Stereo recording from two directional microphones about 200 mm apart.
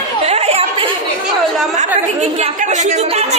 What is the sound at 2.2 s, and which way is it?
A woman's voice, 30° right (ahead or behind).